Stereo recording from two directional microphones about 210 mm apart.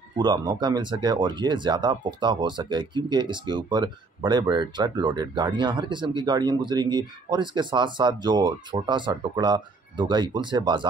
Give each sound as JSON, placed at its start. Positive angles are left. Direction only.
{"t": 0.2, "sound": "speech", "side_deg": -20}